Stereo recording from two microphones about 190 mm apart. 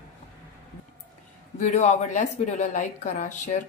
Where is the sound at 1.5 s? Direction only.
40° left (ahead or behind).